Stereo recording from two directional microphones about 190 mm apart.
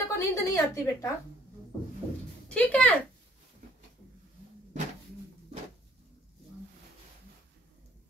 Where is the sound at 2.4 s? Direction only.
5° left (ahead or behind).